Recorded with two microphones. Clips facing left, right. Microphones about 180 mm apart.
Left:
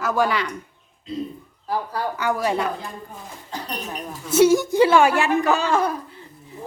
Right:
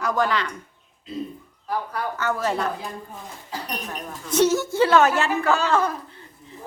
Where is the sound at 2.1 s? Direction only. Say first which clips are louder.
Left 2 dB; 15° left (ahead or behind).